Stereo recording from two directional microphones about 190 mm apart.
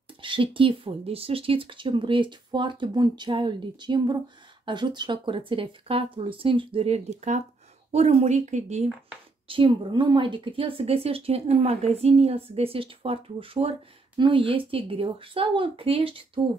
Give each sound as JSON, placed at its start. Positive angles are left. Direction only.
{"t": 0.2, "sound": "a woman's voice", "side_deg": -25}
{"t": 9.5, "sound": "a woman's voice", "side_deg": -25}